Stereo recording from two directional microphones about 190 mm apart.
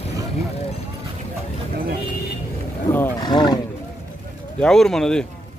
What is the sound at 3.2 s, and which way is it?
Wild animals, 20° left (ahead or behind).